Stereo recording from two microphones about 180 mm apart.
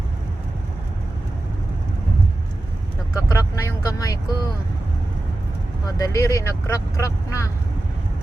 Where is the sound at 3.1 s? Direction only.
20° left (ahead or behind).